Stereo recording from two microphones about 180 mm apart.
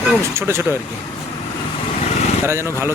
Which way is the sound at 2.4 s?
15° right (ahead or behind).